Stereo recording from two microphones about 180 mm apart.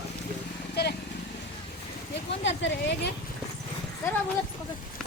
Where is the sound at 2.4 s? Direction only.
80° left.